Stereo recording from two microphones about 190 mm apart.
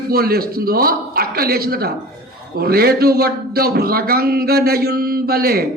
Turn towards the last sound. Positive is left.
turn(degrees=-55)  # may be behind; listen again after turning